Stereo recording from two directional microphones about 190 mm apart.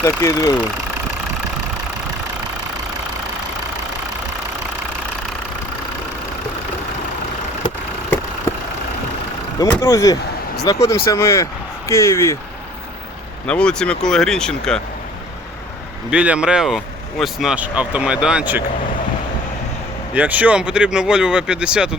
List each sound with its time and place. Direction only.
0.0 s speech: 15° left (ahead or behind)
9.6 s speech: 15° left (ahead or behind)
13.5 s speech: 5° left (ahead or behind)
16.0 s speech: 5° right (ahead or behind)
20.1 s speech: 10° right (ahead or behind)